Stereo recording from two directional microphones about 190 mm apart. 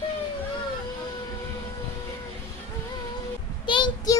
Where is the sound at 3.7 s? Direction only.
25° left (ahead or behind).